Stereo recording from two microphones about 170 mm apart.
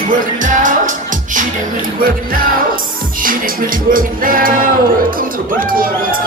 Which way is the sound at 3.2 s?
55° right (ahead or behind).